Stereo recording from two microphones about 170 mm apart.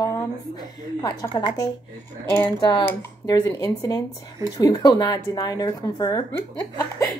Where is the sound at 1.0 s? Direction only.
20° left (ahead or behind).